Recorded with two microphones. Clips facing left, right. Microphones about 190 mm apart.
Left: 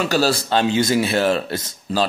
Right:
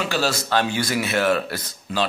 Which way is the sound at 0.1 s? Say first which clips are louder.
Left 2 dB; 35° left (ahead or behind).